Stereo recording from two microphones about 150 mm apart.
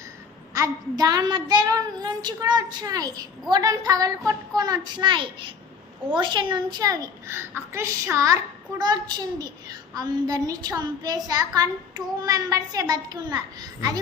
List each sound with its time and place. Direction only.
0.5 s a child's voice: 25° right (ahead or behind)